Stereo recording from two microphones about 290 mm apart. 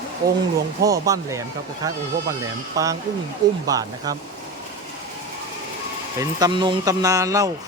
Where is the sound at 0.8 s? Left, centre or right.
Centre.